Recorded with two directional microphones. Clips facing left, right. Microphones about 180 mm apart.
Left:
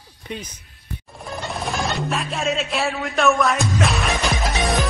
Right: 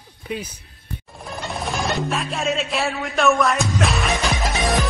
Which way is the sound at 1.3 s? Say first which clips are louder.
Even; centre (ahead or behind).